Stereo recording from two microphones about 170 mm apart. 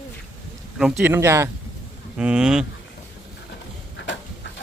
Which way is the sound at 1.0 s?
15° right (ahead or behind).